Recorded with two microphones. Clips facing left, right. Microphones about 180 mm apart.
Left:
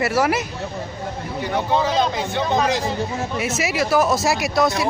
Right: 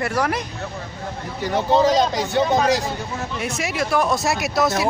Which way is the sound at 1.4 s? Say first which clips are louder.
Right 3 dB; 40° right (ahead or behind).